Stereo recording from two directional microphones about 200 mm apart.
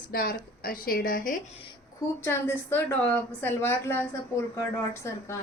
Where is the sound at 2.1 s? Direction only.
10° left (ahead or behind).